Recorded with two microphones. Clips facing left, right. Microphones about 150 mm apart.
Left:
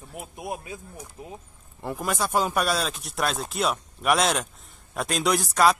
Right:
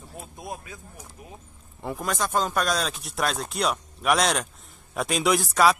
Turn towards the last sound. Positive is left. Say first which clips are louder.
# even
turn(degrees=0)  # may be behind; listen again after turning